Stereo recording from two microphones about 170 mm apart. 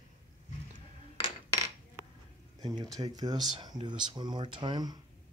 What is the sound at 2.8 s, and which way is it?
Speech, 25° right (ahead or behind).